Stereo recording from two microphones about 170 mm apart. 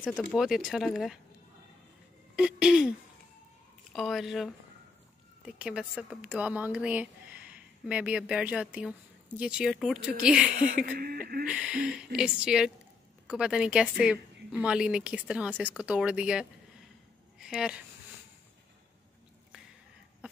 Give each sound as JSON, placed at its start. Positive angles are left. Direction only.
{"t": 0.1, "sound": "speech", "side_deg": 10}
{"t": 0.4, "sound": "speech", "side_deg": 0}
{"t": 2.3, "sound": "speech", "side_deg": -5}
{"t": 3.9, "sound": "speech", "side_deg": 0}
{"t": 5.5, "sound": "speech", "side_deg": -5}
{"t": 11.0, "sound": "speech", "side_deg": -60}
{"t": 11.4, "sound": "speech", "side_deg": -5}